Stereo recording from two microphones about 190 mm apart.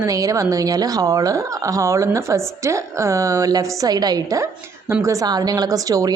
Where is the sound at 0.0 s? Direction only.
20° right (ahead or behind).